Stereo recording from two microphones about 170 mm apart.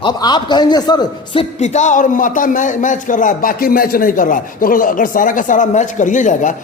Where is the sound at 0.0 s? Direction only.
25° left (ahead or behind).